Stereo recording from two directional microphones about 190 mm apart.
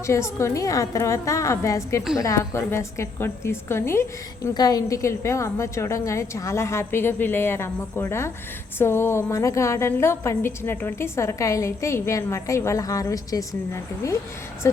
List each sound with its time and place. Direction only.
0.1 s a woman's voice: 15° left (ahead or behind)